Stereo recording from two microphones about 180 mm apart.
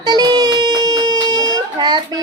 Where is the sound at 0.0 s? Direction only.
25° right (ahead or behind).